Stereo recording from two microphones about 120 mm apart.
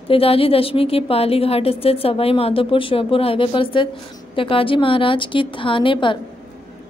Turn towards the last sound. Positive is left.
turn(degrees=45)  # may be behind; listen again after turning